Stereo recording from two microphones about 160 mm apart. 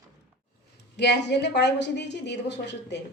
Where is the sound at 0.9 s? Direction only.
90° left.